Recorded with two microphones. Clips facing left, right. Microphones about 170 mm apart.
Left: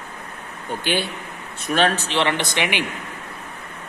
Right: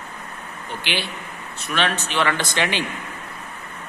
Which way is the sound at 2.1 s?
25° left (ahead or behind).